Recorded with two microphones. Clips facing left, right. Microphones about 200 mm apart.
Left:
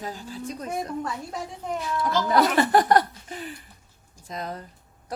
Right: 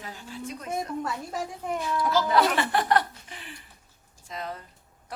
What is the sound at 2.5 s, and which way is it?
A woman's voice, 40° left (ahead or behind).